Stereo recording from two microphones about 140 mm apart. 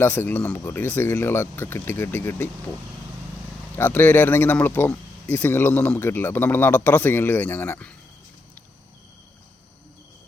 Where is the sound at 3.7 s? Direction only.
15° left (ahead or behind).